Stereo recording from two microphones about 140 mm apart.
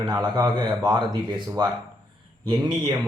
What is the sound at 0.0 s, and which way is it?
A man's voice, 30° right (ahead or behind).